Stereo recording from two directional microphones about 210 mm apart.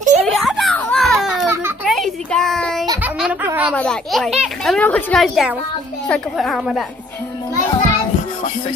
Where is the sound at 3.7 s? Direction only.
5° left (ahead or behind).